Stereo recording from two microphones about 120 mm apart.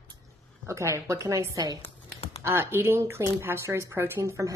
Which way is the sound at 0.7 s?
25° right (ahead or behind).